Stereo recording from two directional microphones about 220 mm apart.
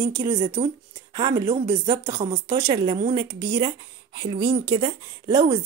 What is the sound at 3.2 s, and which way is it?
A woman's voice, 20° right (ahead or behind).